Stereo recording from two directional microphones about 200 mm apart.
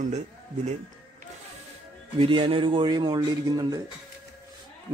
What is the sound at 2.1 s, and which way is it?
A man's voice, 25° right (ahead or behind).